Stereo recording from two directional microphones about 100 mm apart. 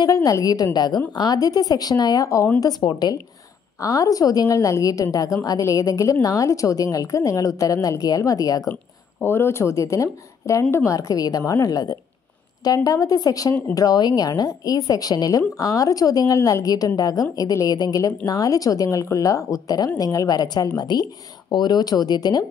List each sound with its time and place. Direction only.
0.0 s speech: 35° left (ahead or behind)
2.6 s speech: 45° left (ahead or behind)
3.8 s speech: 35° left (ahead or behind)
9.2 s speech: 25° left (ahead or behind); by 22.5 s 40° left (ahead or behind)